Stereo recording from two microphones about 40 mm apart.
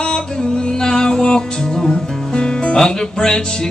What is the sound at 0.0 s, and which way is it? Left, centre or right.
Music, left.